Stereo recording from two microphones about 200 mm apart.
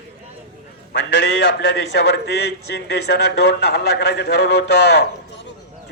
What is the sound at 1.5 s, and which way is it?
A man's voice, 60° left (ahead or behind).